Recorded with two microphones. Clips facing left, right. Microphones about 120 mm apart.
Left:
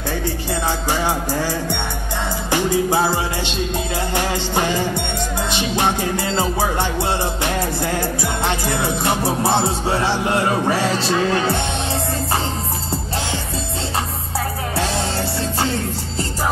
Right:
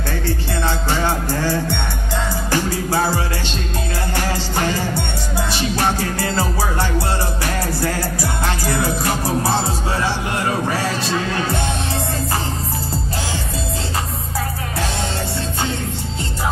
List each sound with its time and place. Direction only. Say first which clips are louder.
0.7 s music: right 1 dB; 15° left (ahead or behind); by 11.6 s 30° left (ahead or behind)